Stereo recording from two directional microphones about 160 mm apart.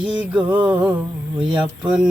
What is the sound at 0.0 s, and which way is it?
Music, 5° right (ahead or behind).